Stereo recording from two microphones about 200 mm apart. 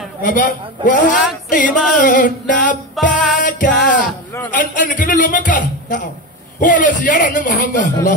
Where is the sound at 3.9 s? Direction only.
40° left (ahead or behind).